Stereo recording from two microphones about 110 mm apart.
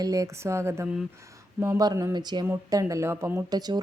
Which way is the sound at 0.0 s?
30° right (ahead or behind).